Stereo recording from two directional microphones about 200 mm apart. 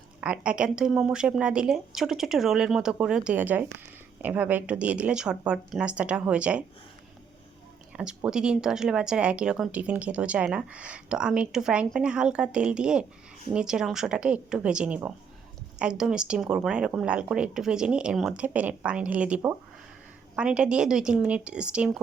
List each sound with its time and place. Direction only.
0.2 s speech: 5° right (ahead or behind)
7.9 s speech: 5° right (ahead or behind)